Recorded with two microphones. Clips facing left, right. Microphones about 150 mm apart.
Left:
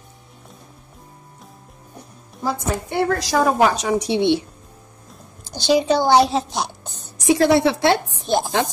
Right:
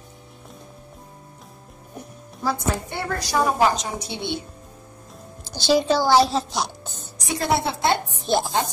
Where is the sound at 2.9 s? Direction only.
80° left.